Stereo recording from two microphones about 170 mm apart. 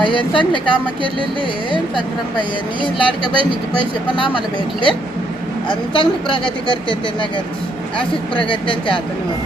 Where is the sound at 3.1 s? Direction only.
30° right (ahead or behind).